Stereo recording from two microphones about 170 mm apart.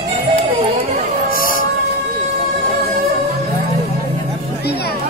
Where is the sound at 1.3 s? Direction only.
55° left (ahead or behind).